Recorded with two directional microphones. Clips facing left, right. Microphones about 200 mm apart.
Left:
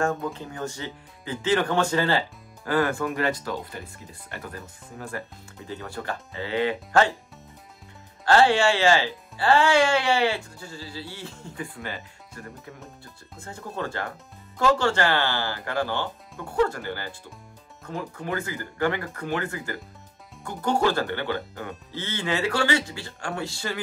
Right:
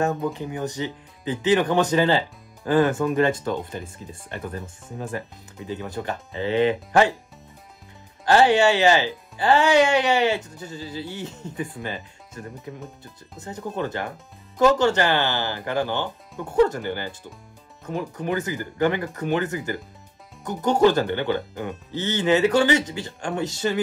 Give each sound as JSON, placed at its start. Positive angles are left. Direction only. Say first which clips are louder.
{"t": 0.0, "sound": "speech", "louder": "right 3 dB", "side_deg": -20}
{"t": 8.3, "sound": "speech", "louder": "right 2 dB", "side_deg": -20}